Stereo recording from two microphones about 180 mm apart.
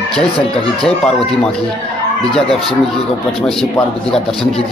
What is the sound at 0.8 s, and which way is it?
A man's voice, centre (ahead or behind).